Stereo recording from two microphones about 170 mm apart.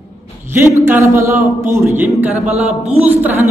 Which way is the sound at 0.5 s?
15° right (ahead or behind).